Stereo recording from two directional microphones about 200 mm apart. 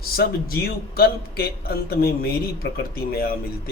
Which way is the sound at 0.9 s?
50° left (ahead or behind).